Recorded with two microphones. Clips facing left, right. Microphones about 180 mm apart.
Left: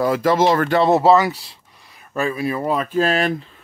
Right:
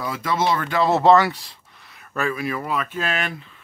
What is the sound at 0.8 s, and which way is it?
Speech, 15° left (ahead or behind).